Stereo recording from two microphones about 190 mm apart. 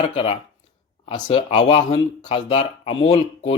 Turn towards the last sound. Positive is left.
turn(degrees=30)  # may be behind; listen again after turning